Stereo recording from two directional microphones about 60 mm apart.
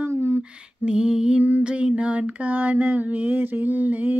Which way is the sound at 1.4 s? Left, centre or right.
Right.